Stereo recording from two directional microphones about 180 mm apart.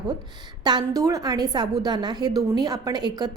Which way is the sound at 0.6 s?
25° right (ahead or behind).